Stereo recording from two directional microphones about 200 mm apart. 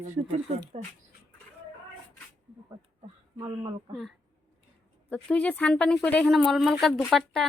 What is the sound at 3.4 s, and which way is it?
Speech, 25° right (ahead or behind).